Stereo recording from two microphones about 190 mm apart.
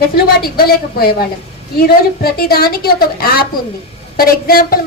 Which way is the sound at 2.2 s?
50° left (ahead or behind).